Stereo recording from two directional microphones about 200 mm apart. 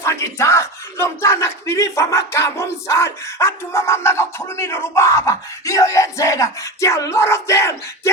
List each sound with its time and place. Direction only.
0.0 s battle cry: 15° left (ahead or behind)